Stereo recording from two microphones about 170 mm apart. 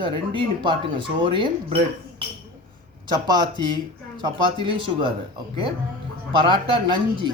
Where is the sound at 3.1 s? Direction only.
25° right (ahead or behind).